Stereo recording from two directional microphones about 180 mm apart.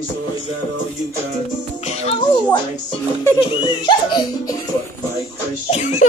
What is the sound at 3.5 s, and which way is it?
Speech, 25° left (ahead or behind).